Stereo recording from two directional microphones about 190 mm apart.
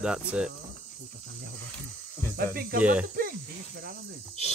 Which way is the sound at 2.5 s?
50° right (ahead or behind).